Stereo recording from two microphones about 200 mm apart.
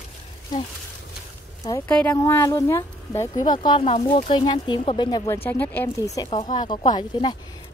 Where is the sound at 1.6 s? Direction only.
10° left (ahead or behind).